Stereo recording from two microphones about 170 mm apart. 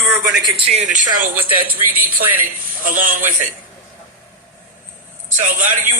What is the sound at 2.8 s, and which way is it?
Speech, 55° right (ahead or behind).